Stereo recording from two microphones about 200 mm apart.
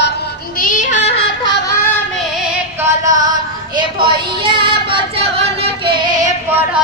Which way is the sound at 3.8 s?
25° right (ahead or behind).